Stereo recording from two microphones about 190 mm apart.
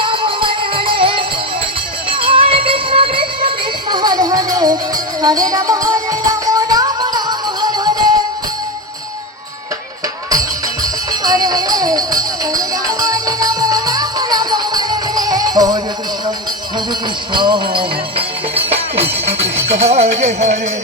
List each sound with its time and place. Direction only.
0.0 s music: 25° right (ahead or behind)
11.1 s music: 20° right (ahead or behind)
17.3 s jingle bell: 25° right (ahead or behind)
19.9 s music: 35° right (ahead or behind)